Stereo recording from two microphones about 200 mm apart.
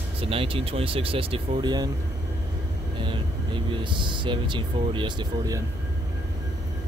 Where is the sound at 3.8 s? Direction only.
25° right (ahead or behind).